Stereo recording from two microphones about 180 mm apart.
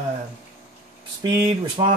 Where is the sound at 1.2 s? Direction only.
25° right (ahead or behind).